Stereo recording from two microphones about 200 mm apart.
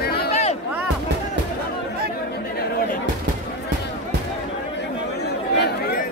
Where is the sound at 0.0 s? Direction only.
50° left (ahead or behind).